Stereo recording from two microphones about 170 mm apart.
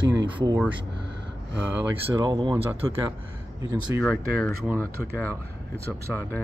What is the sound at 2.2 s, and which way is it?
Speech, 25° right (ahead or behind).